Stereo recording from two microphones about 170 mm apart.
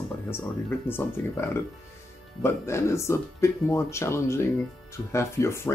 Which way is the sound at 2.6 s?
15° left (ahead or behind).